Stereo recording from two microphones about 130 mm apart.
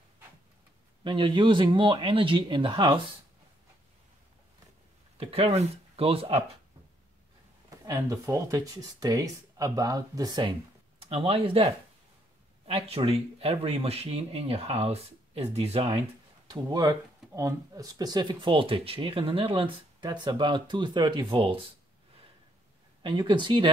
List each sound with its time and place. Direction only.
1.0 s speech: 35° right (ahead or behind)
5.1 s speech: 50° right (ahead or behind)
7.8 s speech: 25° right (ahead or behind)
11.0 s speech: 45° right (ahead or behind)
16.4 s speech: 25° right (ahead or behind); by 21.6 s 45° right (ahead or behind)
23.0 s speech: 35° right (ahead or behind)